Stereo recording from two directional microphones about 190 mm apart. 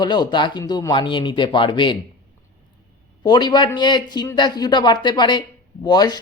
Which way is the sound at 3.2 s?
20° left (ahead or behind).